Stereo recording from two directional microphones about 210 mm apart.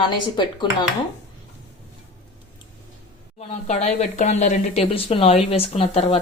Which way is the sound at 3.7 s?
30° left (ahead or behind).